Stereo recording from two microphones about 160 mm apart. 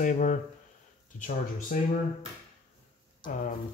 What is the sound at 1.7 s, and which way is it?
Speech, 55° left (ahead or behind).